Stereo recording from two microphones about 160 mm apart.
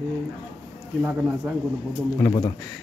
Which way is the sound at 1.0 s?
15° right (ahead or behind).